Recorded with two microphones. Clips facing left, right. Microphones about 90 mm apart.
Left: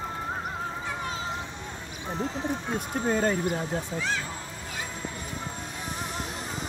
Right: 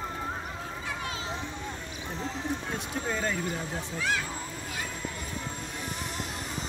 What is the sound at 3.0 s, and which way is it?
Speech, 40° left (ahead or behind).